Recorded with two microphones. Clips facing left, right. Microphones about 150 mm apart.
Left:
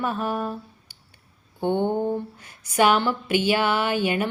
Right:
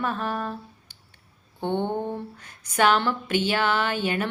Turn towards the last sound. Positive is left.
turn(degrees=10)  # may be behind; listen again after turning